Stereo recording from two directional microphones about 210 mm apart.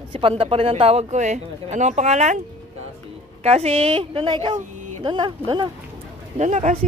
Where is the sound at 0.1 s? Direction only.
25° right (ahead or behind).